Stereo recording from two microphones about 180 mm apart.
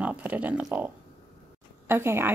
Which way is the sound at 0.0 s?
10° right (ahead or behind).